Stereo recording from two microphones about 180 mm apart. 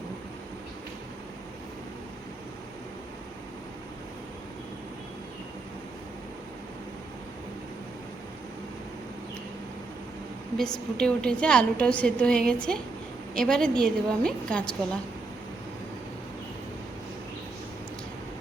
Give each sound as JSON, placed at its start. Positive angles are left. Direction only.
{"t": 10.6, "sound": "a woman's voice", "side_deg": 5}